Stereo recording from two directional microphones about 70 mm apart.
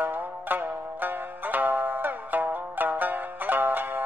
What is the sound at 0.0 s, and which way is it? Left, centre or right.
Zither, right.